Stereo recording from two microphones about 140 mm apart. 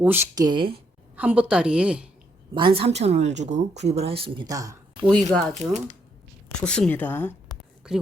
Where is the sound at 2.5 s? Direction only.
40° right (ahead or behind); by 5.1 s 25° right (ahead or behind).